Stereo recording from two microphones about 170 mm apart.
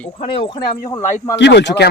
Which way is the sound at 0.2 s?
30° left (ahead or behind).